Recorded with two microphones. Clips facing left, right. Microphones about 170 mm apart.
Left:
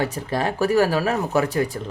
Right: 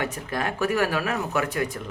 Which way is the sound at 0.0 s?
35° left (ahead or behind).